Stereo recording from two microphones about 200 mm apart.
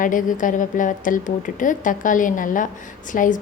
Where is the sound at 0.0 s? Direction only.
40° left (ahead or behind).